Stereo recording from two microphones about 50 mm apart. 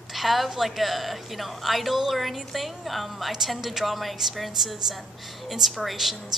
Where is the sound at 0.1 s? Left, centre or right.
Centre.